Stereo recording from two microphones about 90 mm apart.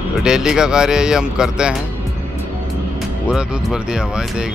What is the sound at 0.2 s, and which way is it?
Speech, 10° right (ahead or behind).